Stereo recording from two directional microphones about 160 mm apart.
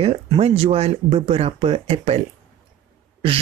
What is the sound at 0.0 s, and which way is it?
Speech, 40° right (ahead or behind).